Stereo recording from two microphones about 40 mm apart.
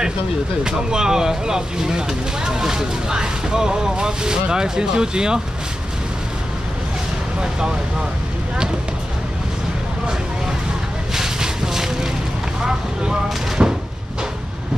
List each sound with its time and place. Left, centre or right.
0.7 s speech: centre
11.1 s vehicle: centre
13.6 s a sound: right